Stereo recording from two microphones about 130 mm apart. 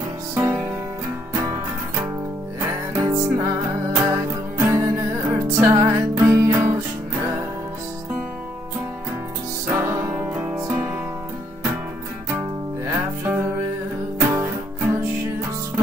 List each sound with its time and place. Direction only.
0.4 s music: 20° right (ahead or behind)
2.6 s music: 25° right (ahead or behind)
9.7 s music: 20° right (ahead or behind)
12.3 s music: 20° right (ahead or behind)